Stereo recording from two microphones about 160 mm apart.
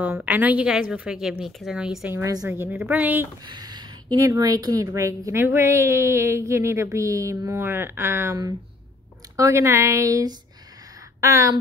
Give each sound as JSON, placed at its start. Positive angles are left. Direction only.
{"t": 0.0, "sound": "a woman's voice", "side_deg": -10}
{"t": 3.4, "sound": "a woman's voice", "side_deg": -25}